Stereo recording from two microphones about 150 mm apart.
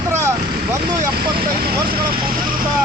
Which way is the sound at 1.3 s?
90° right.